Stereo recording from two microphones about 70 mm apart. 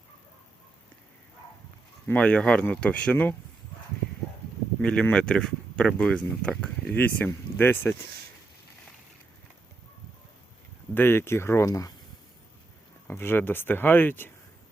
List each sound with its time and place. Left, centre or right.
2.1 s speech: centre
4.8 s speech: centre; by 7.9 s left
10.9 s speech: left
13.1 s speech: left